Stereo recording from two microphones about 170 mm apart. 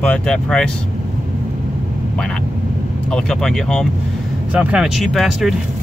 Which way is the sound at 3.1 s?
5° left (ahead or behind).